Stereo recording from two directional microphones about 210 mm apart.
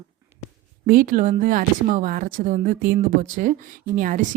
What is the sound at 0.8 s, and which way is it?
Speech, 40° right (ahead or behind).